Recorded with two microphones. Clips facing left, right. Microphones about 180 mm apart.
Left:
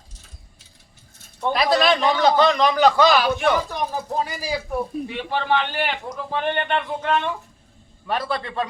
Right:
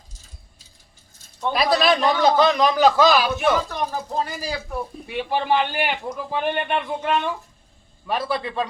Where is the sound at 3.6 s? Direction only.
10° left (ahead or behind).